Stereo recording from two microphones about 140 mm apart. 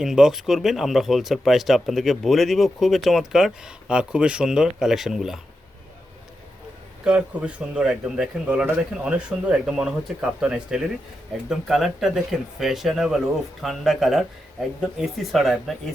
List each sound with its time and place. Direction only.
0.0 s speech: 5° right (ahead or behind)
7.0 s speech: 10° right (ahead or behind)